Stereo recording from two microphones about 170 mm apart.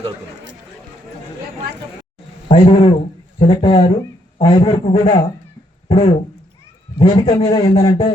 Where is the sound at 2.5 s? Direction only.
35° left (ahead or behind).